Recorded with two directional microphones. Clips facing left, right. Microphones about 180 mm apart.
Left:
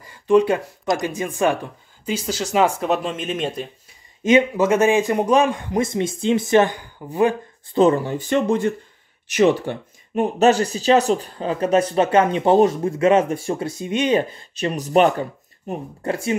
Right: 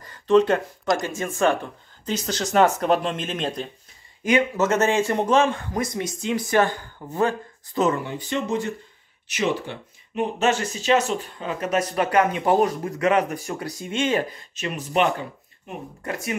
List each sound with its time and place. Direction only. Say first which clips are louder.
0.0 s a sound: left 2 dB; 10° left (ahead or behind)
0.9 s speech: left 2 dB; 15° left (ahead or behind)
4.2 s speech: left 5 dB; 25° left (ahead or behind)
4.6 s speech: left 4 dB; 10° left (ahead or behind)
7.6 s speech: left 6 dB; 30° left (ahead or behind)
14.5 s speech: left 9 dB; 35° left (ahead or behind)